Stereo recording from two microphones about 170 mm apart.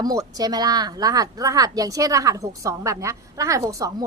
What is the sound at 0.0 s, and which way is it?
Speech, 20° right (ahead or behind).